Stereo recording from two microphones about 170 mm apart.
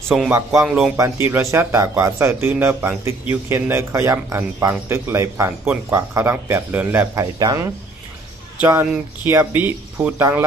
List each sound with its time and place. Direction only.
0.3 s speech: 15° right (ahead or behind)
0.7 s speech: 5° right (ahead or behind)
1.2 s speech: 15° right (ahead or behind)